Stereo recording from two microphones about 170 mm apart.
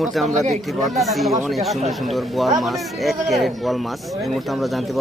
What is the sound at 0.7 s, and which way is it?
Speech, centre (ahead or behind).